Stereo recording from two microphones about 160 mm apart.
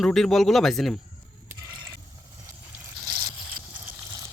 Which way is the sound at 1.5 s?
25° right (ahead or behind).